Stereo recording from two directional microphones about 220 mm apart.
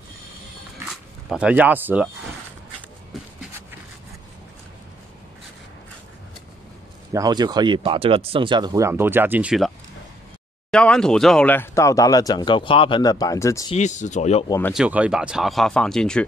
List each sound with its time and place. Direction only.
0.8 s speech: 5° right (ahead or behind)
7.1 s speech: 15° right (ahead or behind)
10.7 s speech: 5° left (ahead or behind)
13.7 s speech: 35° left (ahead or behind)
14.7 s speech: 5° right (ahead or behind)